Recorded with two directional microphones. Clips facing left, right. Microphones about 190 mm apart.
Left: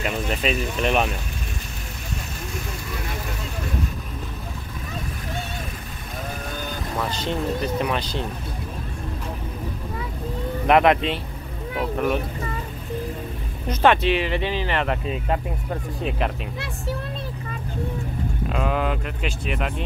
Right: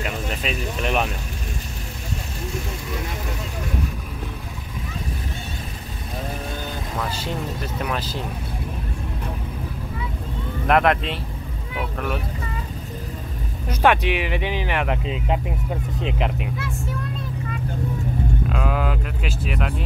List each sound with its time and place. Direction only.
0.0 s speech: centre (ahead or behind)
7.0 s speech: 5° right (ahead or behind)
10.7 s speech: centre (ahead or behind)
13.7 s speech: 10° right (ahead or behind)
16.5 s speech: 30° left (ahead or behind)
18.5 s speech: centre (ahead or behind)